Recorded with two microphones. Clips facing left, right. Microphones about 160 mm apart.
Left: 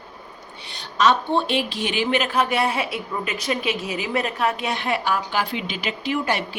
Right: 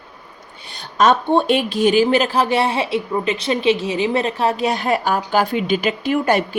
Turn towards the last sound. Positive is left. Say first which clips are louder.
# right 6 dB
turn(degrees=-50)  # may be behind; listen again after turning